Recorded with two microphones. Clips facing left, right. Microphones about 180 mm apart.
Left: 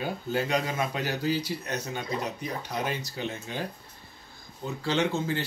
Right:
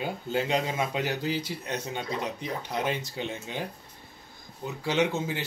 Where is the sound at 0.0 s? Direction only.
20° right (ahead or behind).